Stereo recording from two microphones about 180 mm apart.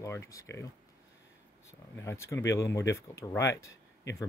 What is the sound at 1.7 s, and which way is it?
Speech, 15° left (ahead or behind).